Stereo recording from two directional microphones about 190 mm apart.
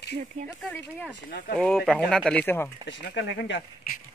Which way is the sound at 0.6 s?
10° left (ahead or behind).